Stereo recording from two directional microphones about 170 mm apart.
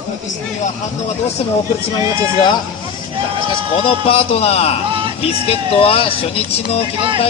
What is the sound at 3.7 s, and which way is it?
Speech, 35° left (ahead or behind).